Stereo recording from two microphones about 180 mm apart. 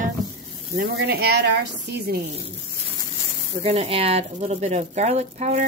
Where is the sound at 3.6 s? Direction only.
35° right (ahead or behind).